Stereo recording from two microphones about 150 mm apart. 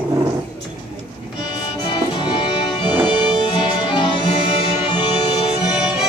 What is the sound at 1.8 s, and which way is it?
Music, 30° left (ahead or behind).